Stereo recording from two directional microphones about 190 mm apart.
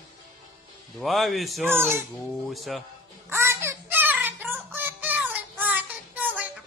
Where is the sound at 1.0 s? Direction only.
Centre (ahead or behind).